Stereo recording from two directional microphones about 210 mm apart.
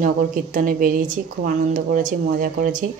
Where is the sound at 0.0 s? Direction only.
40° right (ahead or behind).